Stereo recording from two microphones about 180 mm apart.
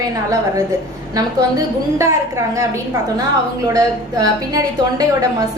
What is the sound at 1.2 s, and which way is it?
Speech, 20° right (ahead or behind).